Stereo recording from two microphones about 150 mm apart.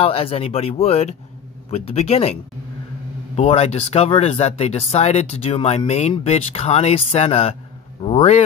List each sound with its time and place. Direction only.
0.0 s speech: 40° left (ahead or behind)
3.3 s speech: 40° left (ahead or behind)